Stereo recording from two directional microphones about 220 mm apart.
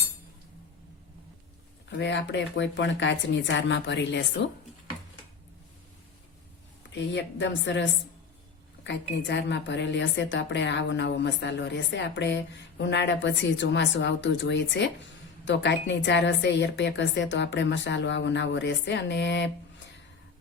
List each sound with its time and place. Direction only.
1.9 s a woman's voice: 55° left (ahead or behind)
7.1 s a woman's voice: 55° left (ahead or behind)